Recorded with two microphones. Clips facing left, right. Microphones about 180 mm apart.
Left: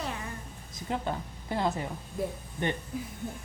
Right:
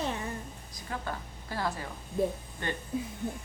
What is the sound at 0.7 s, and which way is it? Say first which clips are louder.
A woman's voice: left 5 dB; 20° left (ahead or behind).